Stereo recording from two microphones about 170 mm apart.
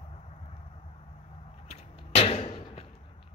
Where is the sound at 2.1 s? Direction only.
40° left (ahead or behind).